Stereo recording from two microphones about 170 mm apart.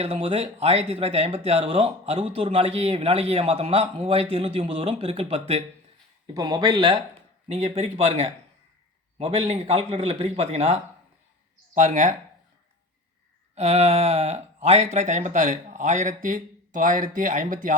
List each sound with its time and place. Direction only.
0.0 s speech: 35° right (ahead or behind)
6.3 s speech: 25° right (ahead or behind)
7.4 s speech: 35° right (ahead or behind)
13.6 s speech: 35° right (ahead or behind)